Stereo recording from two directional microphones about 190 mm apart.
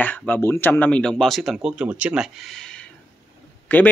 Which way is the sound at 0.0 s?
10° left (ahead or behind).